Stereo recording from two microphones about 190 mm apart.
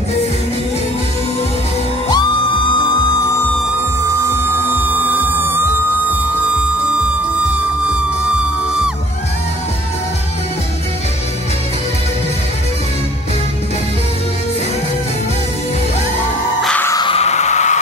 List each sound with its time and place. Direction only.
4.8 s music: 10° right (ahead or behind)
16.6 s music: 10° left (ahead or behind)
16.9 s a sound: 25° left (ahead or behind)